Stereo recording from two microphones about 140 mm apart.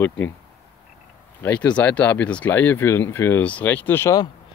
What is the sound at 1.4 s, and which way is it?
Speech, 10° left (ahead or behind).